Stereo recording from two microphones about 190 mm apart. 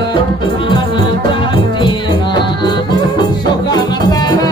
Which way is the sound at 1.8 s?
25° left (ahead or behind).